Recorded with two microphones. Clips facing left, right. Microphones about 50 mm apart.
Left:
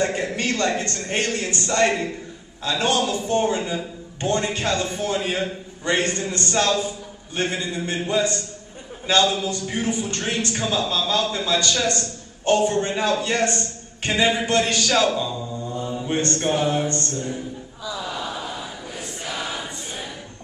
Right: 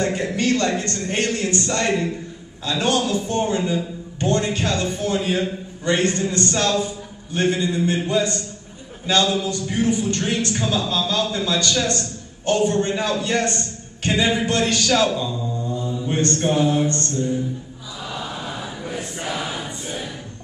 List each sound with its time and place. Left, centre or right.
0.0 s a man's voice: left
15.7 s mantra: left
16.4 s a sound: left
18.9 s choir: centre